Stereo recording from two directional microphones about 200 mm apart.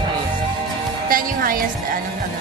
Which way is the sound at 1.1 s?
45° right (ahead or behind).